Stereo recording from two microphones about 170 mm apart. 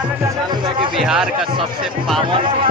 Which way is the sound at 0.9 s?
5° right (ahead or behind).